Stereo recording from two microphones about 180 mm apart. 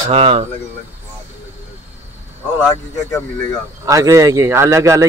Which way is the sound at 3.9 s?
15° right (ahead or behind).